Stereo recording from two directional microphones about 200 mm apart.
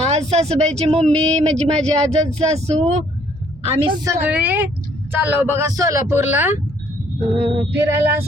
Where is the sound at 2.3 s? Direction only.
30° right (ahead or behind).